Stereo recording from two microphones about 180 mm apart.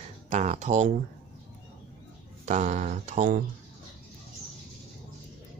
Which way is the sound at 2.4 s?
40° right (ahead or behind).